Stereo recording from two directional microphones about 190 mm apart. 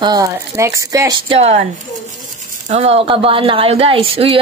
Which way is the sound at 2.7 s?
30° right (ahead or behind).